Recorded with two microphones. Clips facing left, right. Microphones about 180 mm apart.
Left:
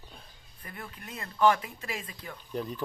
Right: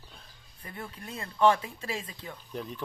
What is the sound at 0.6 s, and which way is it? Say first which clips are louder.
Speech: right 2 dB; 25° right (ahead or behind).